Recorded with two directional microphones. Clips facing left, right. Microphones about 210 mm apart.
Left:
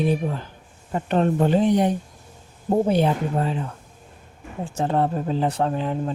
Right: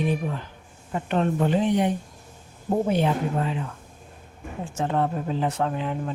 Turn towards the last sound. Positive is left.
turn(degrees=35)  # may be behind; listen again after turning